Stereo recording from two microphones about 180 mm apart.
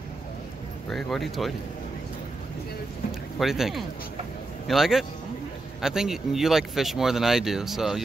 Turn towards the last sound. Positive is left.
turn(degrees=0)  # may be behind; listen again after turning